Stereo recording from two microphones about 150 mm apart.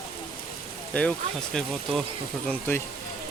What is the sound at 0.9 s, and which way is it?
Speech, 10° left (ahead or behind).